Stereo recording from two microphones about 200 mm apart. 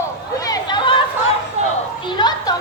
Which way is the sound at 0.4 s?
20° left (ahead or behind).